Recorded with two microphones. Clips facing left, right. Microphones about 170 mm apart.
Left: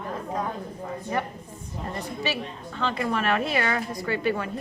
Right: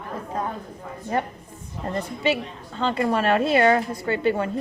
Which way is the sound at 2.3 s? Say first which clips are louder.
Right 6 dB; 30° right (ahead or behind).